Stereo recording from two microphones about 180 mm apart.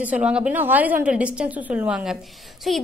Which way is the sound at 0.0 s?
5° right (ahead or behind).